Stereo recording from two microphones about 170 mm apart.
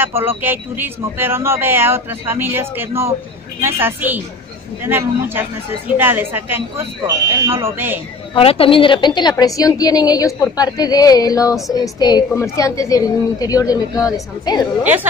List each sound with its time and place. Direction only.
0.0 s speech: 15° right (ahead or behind)
8.4 s a woman's voice: 35° left (ahead or behind)